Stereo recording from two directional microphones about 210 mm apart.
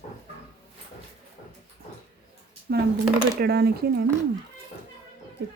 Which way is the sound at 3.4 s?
50° right (ahead or behind).